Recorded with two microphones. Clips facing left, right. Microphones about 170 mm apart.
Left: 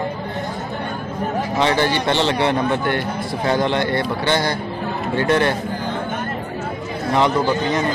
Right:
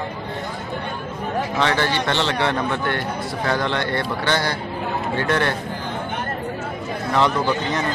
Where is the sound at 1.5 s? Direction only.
15° left (ahead or behind).